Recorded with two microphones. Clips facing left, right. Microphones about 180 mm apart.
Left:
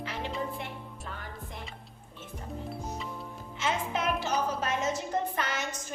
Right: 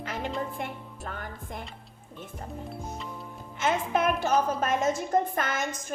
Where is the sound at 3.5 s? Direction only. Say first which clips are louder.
Right 5 dB; 50° right (ahead or behind).